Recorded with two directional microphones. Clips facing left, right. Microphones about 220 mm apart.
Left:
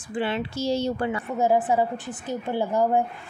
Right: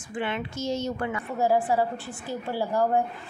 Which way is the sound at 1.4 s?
20° left (ahead or behind).